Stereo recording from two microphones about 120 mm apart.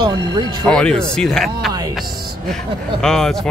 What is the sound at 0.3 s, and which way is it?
Speech, 35° right (ahead or behind).